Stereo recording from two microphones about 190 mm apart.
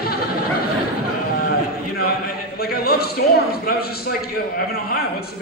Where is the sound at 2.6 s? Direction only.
55° left (ahead or behind).